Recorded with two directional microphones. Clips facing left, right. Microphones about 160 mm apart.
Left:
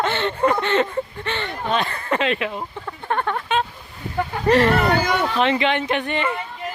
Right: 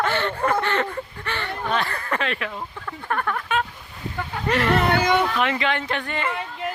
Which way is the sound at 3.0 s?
25° left (ahead or behind).